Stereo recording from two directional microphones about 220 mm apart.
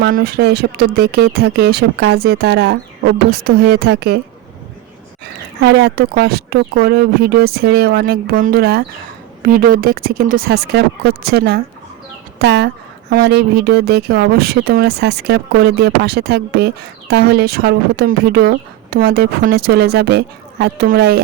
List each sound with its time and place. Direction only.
0.0 s a woman's voice: 45° right (ahead or behind)
5.6 s a woman's voice: 50° right (ahead or behind)